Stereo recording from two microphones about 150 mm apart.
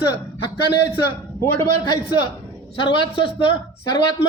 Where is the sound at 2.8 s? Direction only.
35° left (ahead or behind).